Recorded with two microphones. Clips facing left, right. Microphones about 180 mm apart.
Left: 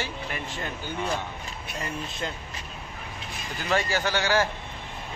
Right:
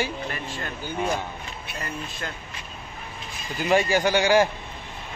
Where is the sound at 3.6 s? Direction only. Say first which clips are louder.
Right 6 dB; 15° right (ahead or behind).